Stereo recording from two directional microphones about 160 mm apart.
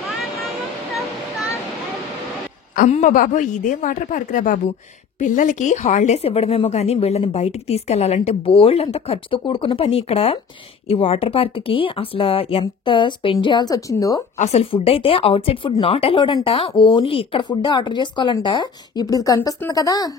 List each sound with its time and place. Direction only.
2.7 s a woman's voice: 55° left (ahead or behind); by 14.2 s 20° left (ahead or behind)
14.4 s a woman's voice: 40° left (ahead or behind); by 20.1 s 20° left (ahead or behind)